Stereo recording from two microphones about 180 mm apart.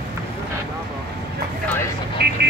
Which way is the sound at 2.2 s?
60° right (ahead or behind).